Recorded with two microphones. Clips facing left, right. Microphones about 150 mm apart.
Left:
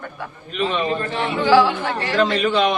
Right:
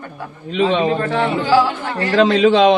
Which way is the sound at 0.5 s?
90° right.